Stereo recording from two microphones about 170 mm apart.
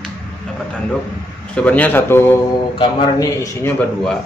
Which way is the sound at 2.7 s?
25° left (ahead or behind).